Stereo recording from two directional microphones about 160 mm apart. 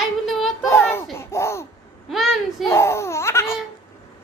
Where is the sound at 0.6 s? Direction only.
15° left (ahead or behind).